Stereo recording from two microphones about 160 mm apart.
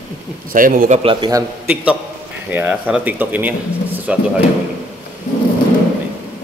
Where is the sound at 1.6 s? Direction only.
10° right (ahead or behind).